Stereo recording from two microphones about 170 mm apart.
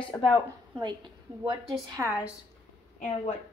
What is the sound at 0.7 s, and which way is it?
Speech, 25° right (ahead or behind).